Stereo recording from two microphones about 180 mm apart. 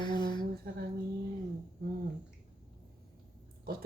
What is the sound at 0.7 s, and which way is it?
Speech, 60° right (ahead or behind).